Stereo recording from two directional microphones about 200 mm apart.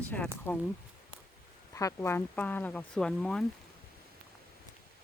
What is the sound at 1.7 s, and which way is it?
Speech, 15° left (ahead or behind).